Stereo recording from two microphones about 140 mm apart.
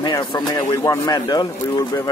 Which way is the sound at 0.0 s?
30° left (ahead or behind).